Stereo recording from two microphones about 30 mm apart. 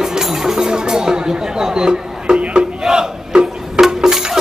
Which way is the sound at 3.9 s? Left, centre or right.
Right.